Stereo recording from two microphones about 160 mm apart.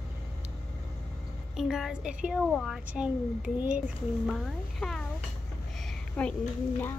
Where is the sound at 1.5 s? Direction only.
Centre (ahead or behind).